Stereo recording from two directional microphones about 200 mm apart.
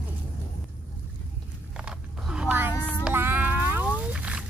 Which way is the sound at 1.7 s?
5° right (ahead or behind).